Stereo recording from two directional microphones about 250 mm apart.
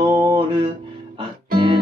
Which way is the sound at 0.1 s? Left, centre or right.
Centre.